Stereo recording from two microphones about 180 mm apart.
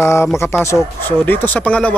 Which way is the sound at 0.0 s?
15° left (ahead or behind).